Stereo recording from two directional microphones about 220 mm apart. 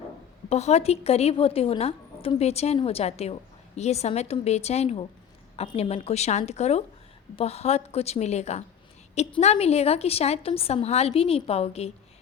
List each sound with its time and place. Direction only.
0.5 s a woman's voice: 30° left (ahead or behind)